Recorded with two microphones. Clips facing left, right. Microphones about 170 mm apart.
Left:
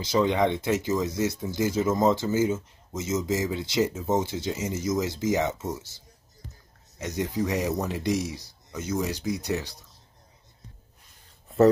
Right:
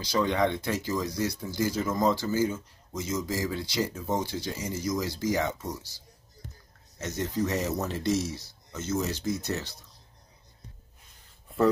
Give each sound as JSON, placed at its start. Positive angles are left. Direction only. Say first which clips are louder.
{"t": 0.0, "sound": "speech", "louder": "left 3 dB", "side_deg": 20}
{"t": 7.0, "sound": "speech", "louder": "left 2 dB", "side_deg": 15}